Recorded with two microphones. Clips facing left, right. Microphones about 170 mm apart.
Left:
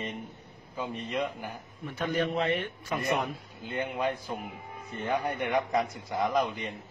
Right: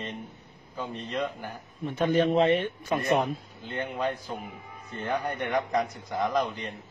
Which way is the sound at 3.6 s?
10° left (ahead or behind).